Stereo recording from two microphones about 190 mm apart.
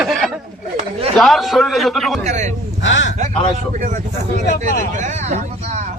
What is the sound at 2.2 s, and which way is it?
Speech, 40° right (ahead or behind).